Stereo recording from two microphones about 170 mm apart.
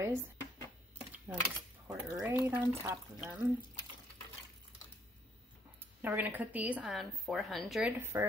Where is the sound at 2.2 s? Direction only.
15° right (ahead or behind).